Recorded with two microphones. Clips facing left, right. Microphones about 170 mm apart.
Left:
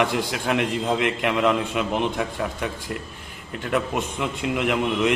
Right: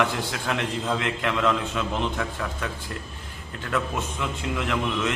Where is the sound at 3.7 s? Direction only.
20° left (ahead or behind).